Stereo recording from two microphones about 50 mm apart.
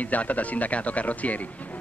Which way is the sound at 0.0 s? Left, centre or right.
Left.